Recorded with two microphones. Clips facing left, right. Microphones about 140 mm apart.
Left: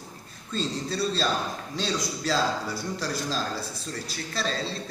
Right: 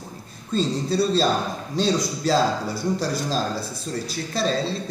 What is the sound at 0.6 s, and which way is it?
A man's voice, 40° right (ahead or behind).